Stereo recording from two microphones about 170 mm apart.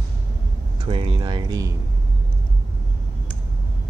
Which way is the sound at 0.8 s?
30° right (ahead or behind).